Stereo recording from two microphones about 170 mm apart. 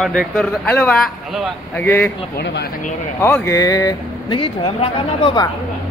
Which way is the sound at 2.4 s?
80° left.